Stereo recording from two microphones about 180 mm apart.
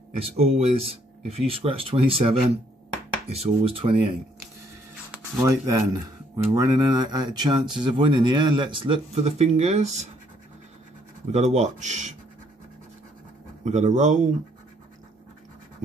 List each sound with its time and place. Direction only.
0.1 s speech: 35° right (ahead or behind)
5.4 s speech: 20° right (ahead or behind); by 10.0 s 40° right (ahead or behind)
11.3 s speech: 40° right (ahead or behind)
13.7 s speech: 40° right (ahead or behind)